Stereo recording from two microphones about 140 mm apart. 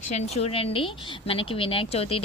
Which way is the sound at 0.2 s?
50° left (ahead or behind).